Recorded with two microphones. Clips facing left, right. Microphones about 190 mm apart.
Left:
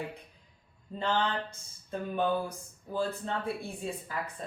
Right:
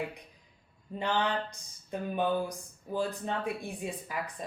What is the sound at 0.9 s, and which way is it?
Speech, 15° right (ahead or behind).